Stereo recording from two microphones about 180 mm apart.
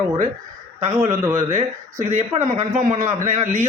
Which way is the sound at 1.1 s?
15° right (ahead or behind).